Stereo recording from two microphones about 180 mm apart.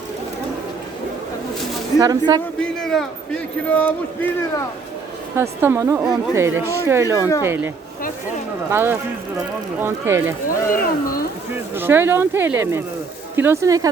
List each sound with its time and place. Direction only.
2.0 s speech: 20° right (ahead or behind)
2.8 s a man's voice: centre (ahead or behind)
5.4 s speech: 15° right (ahead or behind)
8.7 s speech: 10° right (ahead or behind)
10.7 s speech: 55° left (ahead or behind)
11.5 s speech: 10° right (ahead or behind)